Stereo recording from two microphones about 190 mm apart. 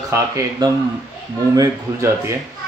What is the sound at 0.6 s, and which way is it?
Speech, 25° right (ahead or behind).